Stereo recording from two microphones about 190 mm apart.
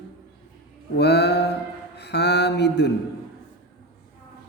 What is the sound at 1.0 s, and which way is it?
A man's voice, 60° left (ahead or behind).